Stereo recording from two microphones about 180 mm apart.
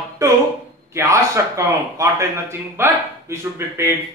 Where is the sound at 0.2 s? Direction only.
20° right (ahead or behind).